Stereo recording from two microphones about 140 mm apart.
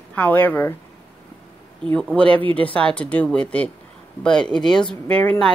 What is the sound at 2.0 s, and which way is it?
Speech, 10° left (ahead or behind).